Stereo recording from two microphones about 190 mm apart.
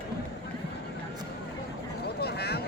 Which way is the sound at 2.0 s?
60° left (ahead or behind).